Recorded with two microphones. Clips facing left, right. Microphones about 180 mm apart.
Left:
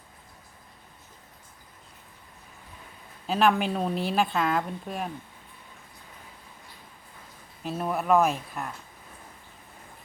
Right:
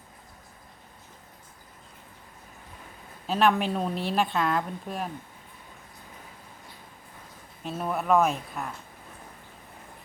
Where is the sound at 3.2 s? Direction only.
Centre (ahead or behind).